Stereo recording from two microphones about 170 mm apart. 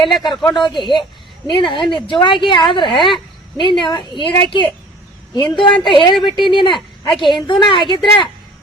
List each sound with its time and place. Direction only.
0.0 s a woman's voice: 30° left (ahead or behind)